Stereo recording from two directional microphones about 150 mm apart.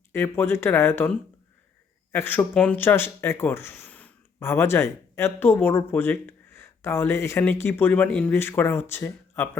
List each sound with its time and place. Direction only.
0.1 s speech: 15° left (ahead or behind)
2.1 s speech: 15° left (ahead or behind)